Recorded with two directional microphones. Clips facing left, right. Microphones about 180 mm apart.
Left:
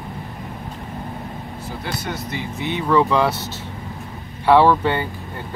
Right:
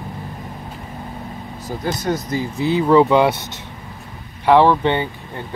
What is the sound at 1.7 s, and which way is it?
Speech, 40° right (ahead or behind).